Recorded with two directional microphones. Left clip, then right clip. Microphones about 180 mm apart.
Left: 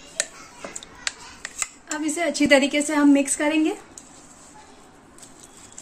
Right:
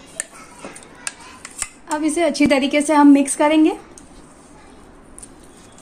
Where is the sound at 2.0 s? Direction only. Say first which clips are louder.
Right 4 dB; 30° right (ahead or behind).